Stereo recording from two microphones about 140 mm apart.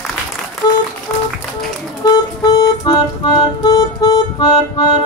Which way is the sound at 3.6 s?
30° left (ahead or behind).